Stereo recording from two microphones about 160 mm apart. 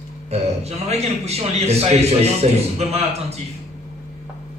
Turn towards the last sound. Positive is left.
turn(degrees=-40)  # may be behind; listen again after turning